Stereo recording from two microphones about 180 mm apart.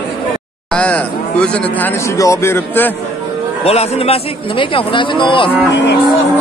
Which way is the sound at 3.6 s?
35° left (ahead or behind).